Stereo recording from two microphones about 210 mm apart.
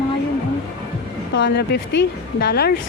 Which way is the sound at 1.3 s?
55° left (ahead or behind).